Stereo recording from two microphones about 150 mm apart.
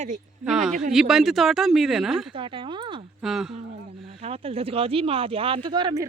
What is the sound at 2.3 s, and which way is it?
Speech, 35° right (ahead or behind).